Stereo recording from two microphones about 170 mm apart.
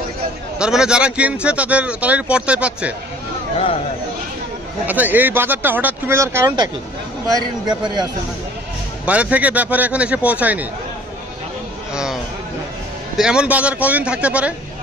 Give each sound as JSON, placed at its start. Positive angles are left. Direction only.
{"t": 0.6, "sound": "speech", "side_deg": -5}
{"t": 4.8, "sound": "a man's voice", "side_deg": -10}
{"t": 9.0, "sound": "speech", "side_deg": -10}
{"t": 11.9, "sound": "a sound", "side_deg": -5}
{"t": 13.2, "sound": "speech", "side_deg": -5}